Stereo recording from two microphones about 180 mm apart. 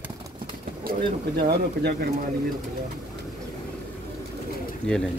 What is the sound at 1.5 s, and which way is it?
Speech, 65° right (ahead or behind).